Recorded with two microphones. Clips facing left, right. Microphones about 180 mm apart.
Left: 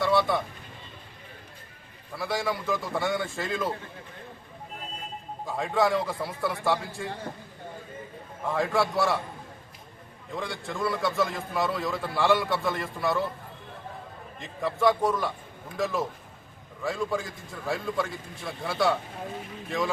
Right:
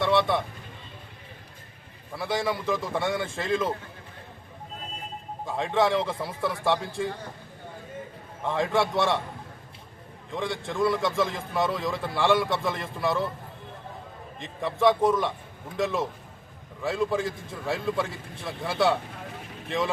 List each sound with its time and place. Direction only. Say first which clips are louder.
0.0 s vehicle: right 1 dB; centre (ahead or behind)
2.1 s a man's voice: right 1 dB; centre (ahead or behind)
5.5 s a man's voice: right 1 dB; centre (ahead or behind)
8.4 s a man's voice: right 1 dB; centre (ahead or behind)
10.3 s a man's voice: right 4 dB; centre (ahead or behind)
14.4 s a man's voice: right 2 dB; centre (ahead or behind)